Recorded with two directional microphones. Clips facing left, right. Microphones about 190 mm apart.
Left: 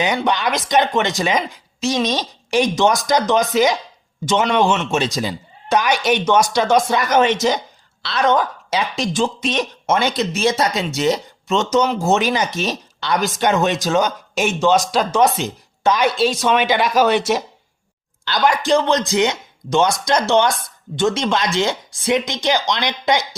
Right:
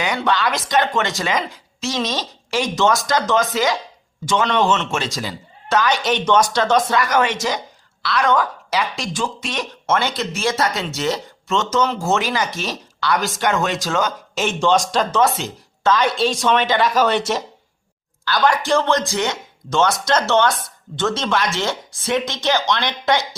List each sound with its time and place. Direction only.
0.0 s speech: 20° left (ahead or behind)
7.0 s speech: 20° left (ahead or behind); by 15.2 s 5° left (ahead or behind)
15.2 s speech: 15° left (ahead or behind)
16.1 s speech: 5° left (ahead or behind)